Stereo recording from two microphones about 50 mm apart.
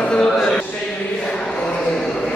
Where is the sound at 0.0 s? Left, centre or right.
Centre.